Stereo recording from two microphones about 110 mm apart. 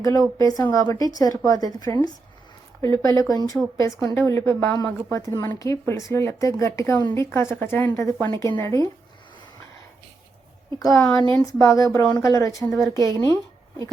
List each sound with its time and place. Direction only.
0.0 s a woman's voice: 30° left (ahead or behind)
3.0 s a woman's voice: 30° left (ahead or behind)
10.8 s a woman's voice: 35° left (ahead or behind)